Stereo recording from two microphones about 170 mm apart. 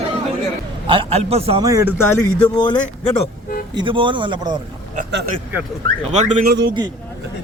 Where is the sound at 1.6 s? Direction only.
20° right (ahead or behind).